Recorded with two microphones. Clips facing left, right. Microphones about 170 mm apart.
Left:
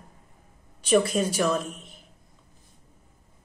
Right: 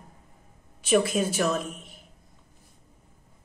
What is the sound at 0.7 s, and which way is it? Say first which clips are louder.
Speech: left 1 dB; 5° right (ahead or behind).